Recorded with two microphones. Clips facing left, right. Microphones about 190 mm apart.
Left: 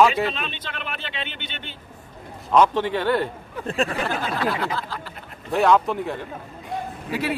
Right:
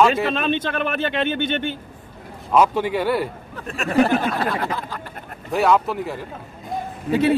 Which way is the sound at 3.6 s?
30° left (ahead or behind).